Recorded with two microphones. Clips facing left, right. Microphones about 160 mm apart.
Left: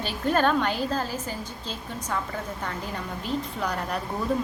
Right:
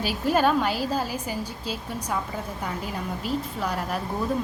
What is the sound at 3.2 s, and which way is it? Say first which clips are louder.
Speech: even; 5° right (ahead or behind).